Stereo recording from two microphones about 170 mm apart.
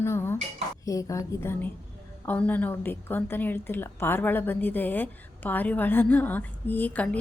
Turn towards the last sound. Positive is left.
turn(degrees=10)  # may be behind; listen again after turning